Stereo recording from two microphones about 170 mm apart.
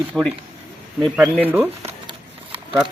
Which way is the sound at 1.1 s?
10° right (ahead or behind).